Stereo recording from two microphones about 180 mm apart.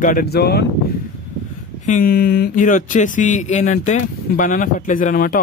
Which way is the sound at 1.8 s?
50° left (ahead or behind).